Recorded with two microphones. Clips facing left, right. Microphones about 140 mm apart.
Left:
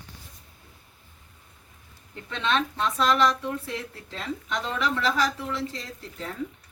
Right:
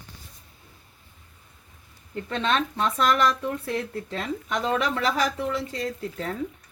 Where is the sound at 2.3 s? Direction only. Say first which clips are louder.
Right 1 dB; 45° right (ahead or behind).